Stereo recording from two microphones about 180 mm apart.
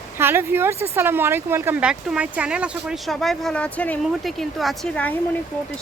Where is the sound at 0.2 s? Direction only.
10° right (ahead or behind).